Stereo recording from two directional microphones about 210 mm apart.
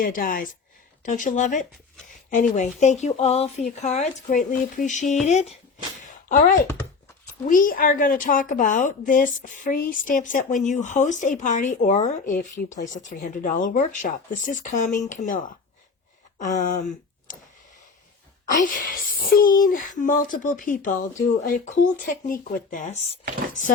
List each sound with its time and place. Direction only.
0.0 s a woman's voice: 40° left (ahead or behind)
6.0 s a sound: 40° left (ahead or behind)
7.4 s a woman's voice: 40° left (ahead or behind)
18.4 s a woman's voice: 40° left (ahead or behind)